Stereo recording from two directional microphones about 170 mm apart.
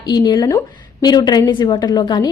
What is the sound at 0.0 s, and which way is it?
A woman's voice, 25° left (ahead or behind).